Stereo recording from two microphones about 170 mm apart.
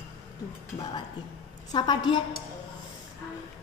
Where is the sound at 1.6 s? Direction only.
25° left (ahead or behind).